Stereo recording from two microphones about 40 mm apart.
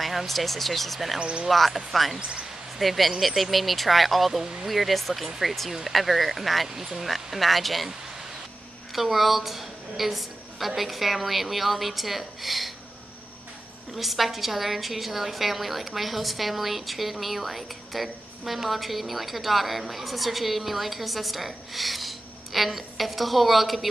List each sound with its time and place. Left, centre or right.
0.0 s a woman's voice: centre
2.1 s speech: right
2.8 s a woman's voice: centre
8.9 s a woman's voice: centre
13.9 s a woman's voice: centre